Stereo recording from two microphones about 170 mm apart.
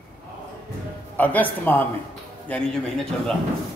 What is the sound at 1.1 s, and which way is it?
A man's voice, 10° left (ahead or behind).